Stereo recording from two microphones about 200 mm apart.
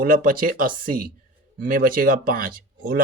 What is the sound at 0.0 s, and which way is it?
Speech, 45° right (ahead or behind).